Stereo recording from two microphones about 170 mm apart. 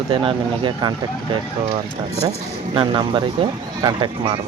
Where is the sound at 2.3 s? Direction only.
30° right (ahead or behind).